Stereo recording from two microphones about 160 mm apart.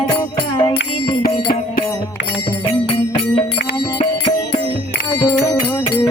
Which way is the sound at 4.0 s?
35° left (ahead or behind).